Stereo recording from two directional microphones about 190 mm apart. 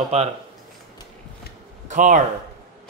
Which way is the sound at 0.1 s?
35° right (ahead or behind).